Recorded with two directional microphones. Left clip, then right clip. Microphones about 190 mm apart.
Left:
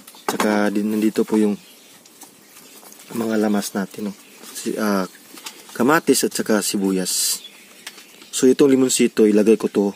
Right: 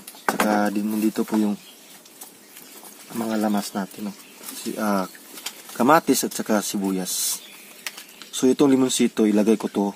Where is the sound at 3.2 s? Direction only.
45° left (ahead or behind).